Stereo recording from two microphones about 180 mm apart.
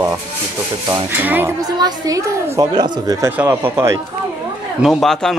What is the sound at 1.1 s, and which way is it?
A woman's voice, 10° right (ahead or behind).